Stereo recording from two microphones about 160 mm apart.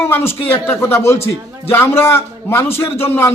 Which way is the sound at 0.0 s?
15° left (ahead or behind).